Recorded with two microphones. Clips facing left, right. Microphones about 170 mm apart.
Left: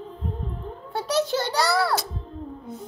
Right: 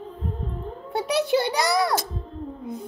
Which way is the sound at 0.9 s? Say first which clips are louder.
Right 2 dB; 15° right (ahead or behind).